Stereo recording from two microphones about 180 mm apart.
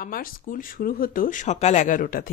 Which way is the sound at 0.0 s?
50° left (ahead or behind).